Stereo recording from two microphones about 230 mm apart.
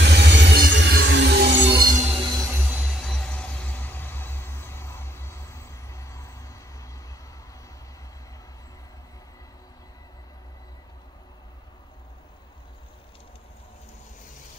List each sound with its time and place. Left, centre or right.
0.0 s music: right
1.7 s music: centre